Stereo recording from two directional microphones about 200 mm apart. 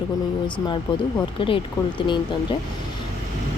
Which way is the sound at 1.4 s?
25° left (ahead or behind).